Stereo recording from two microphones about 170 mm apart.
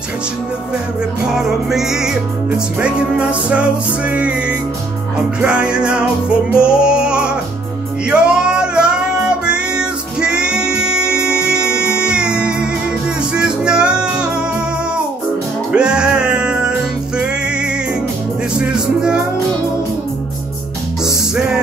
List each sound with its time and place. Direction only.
1.3 s music: 5° right (ahead or behind)
15.7 s music: 5° right (ahead or behind)
18.5 s music: 5° right (ahead or behind)
21.0 s music: 5° right (ahead or behind)